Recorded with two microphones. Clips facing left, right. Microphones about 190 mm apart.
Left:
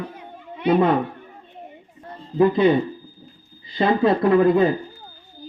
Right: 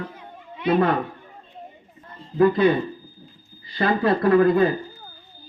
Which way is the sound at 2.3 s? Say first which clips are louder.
Left 1 dB; 20° left (ahead or behind).